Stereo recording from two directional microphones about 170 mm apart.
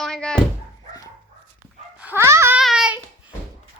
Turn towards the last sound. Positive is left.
turn(degrees=-5)  # may be behind; listen again after turning